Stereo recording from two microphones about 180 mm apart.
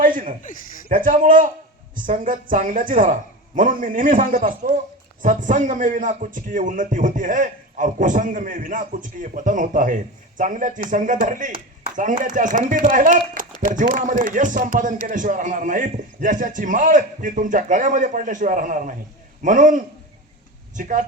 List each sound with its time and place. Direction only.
0.0 s a man's voice: 50° right (ahead or behind)